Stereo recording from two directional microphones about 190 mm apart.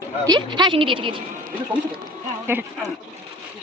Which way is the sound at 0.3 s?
20° right (ahead or behind).